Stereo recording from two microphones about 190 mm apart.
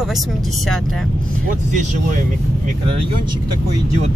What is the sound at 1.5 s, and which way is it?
Speech, 45° right (ahead or behind).